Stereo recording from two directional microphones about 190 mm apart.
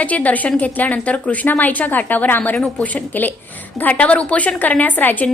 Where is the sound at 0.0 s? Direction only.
10° left (ahead or behind).